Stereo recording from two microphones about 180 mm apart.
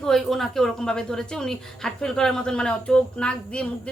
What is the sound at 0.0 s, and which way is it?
A woman's voice, centre (ahead or behind).